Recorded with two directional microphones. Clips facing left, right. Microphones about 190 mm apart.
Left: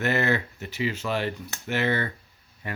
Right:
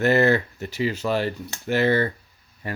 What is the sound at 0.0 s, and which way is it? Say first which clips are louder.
Speech: right 6 dB; 35° right (ahead or behind).